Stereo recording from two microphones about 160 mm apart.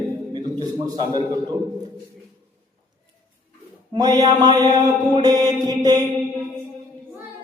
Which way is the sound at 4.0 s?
25° right (ahead or behind).